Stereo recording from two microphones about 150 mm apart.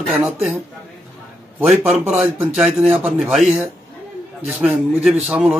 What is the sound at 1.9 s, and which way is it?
Speech, 45° right (ahead or behind).